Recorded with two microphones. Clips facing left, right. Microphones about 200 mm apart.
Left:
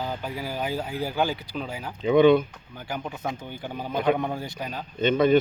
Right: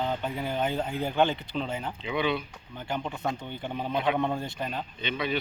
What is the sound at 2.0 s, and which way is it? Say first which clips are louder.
Speech: left 13 dB; 45° left (ahead or behind).